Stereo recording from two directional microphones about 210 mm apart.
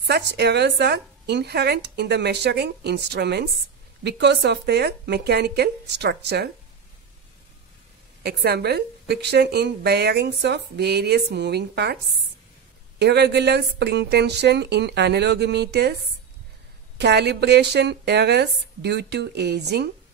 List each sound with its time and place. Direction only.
0.0 s a woman's voice: 55° right (ahead or behind)
8.2 s a woman's voice: 50° right (ahead or behind)
13.0 s a woman's voice: 55° right (ahead or behind)
17.0 s a woman's voice: 55° right (ahead or behind)